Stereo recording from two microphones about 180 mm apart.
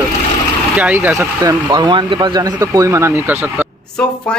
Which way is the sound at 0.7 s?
10° right (ahead or behind).